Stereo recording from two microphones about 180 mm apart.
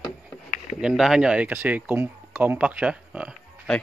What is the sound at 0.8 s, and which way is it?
Speech, 5° right (ahead or behind).